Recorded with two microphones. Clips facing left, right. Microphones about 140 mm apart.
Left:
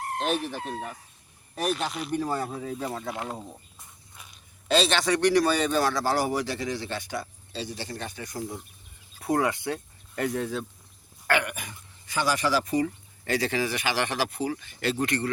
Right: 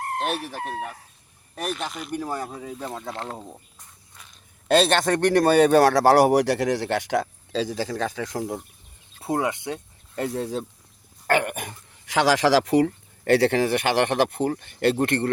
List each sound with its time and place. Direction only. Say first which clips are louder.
0.7 s speech: right 3 dB; 5° right (ahead or behind)
1.5 s speech: left 2 dB; 5° left (ahead or behind)
2.1 s speech: left 1 dB; 10° right (ahead or behind)
3.1 s speech: right 1 dB; 10° left (ahead or behind)
4.2 s a sound: even; 10° left (ahead or behind)
4.7 s speech: right 4 dB; 55° right (ahead or behind); by 8.6 s 80° right
9.2 s speech: even; 25° right (ahead or behind)
11.3 s throat clearing: right 4 dB; 45° right (ahead or behind)
12.0 s speech: right 7 dB; 90° right; by 15.3 s 55° right (ahead or behind)